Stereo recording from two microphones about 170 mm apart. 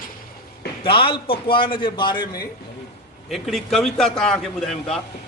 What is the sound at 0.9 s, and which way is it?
A man's voice, 30° left (ahead or behind).